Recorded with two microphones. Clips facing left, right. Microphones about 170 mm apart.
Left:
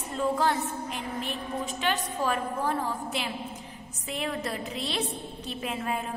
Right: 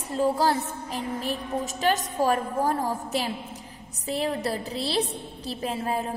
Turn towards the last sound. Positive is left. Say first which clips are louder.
# right 3 dB
turn(degrees=-35)  # may be behind; listen again after turning